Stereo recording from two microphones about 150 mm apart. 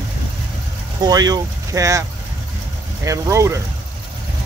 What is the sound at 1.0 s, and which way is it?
Speech, 25° right (ahead or behind).